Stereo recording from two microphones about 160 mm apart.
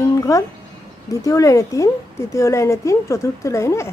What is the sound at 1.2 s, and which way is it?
A woman's voice, 20° left (ahead or behind).